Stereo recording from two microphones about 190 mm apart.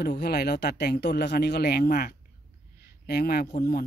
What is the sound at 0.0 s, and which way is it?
Speech, 55° left (ahead or behind).